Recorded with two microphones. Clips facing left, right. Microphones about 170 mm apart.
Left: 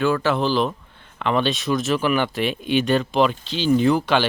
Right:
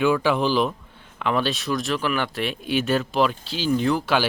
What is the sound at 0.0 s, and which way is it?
Speech, 10° right (ahead or behind).